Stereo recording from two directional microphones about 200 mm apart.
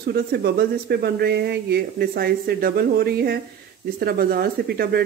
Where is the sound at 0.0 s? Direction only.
55° right (ahead or behind).